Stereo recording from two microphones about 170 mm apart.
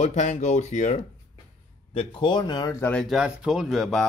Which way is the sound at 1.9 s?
30° left (ahead or behind).